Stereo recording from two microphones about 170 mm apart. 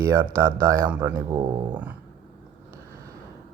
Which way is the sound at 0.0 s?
15° right (ahead or behind).